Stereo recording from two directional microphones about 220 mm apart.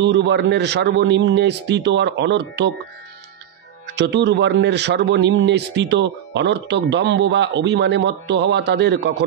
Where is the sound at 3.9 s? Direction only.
50° right (ahead or behind).